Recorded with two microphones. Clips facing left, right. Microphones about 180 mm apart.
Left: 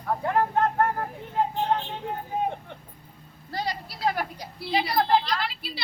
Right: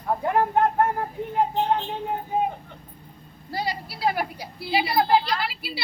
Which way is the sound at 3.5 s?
10° right (ahead or behind).